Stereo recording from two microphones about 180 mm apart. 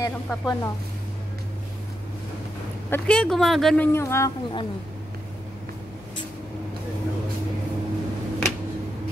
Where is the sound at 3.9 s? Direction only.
15° left (ahead or behind).